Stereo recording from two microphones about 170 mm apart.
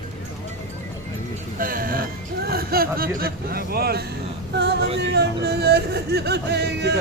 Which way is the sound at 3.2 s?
60° right (ahead or behind).